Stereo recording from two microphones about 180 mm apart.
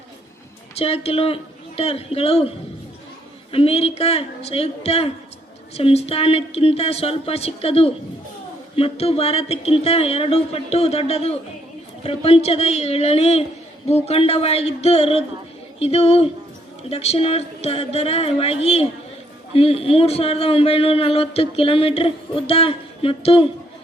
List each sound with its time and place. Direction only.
0.8 s a man's voice: 35° left (ahead or behind)
3.5 s a man's voice: 30° left (ahead or behind)